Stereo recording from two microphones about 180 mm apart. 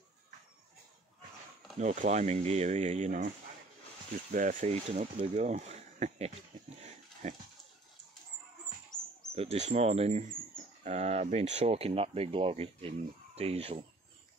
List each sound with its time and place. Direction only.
1.8 s speech: 40° right (ahead or behind)
6.8 s dog: 40° right (ahead or behind)
8.9 s bird: 20° left (ahead or behind)
9.3 s speech: 35° right (ahead or behind)